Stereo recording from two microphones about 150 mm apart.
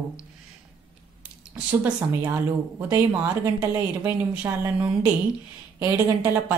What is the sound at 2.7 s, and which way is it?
A woman's voice, 15° right (ahead or behind).